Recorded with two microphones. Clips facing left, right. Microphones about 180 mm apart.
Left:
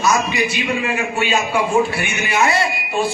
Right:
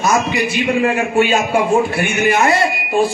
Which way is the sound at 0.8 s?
50° right (ahead or behind).